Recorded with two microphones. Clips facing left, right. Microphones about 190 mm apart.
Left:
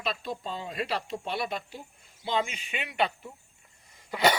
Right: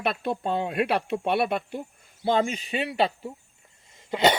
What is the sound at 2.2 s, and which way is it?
Speech, 45° right (ahead or behind).